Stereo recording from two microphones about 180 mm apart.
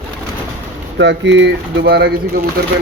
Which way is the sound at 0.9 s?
75° right (ahead or behind).